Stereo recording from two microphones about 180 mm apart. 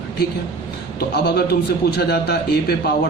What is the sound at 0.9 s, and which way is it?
A man's voice, 65° left (ahead or behind).